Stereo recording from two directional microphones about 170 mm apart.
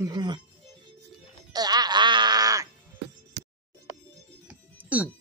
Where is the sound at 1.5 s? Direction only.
25° right (ahead or behind).